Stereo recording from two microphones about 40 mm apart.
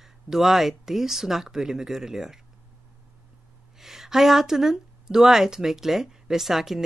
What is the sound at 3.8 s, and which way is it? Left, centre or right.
Speech, centre.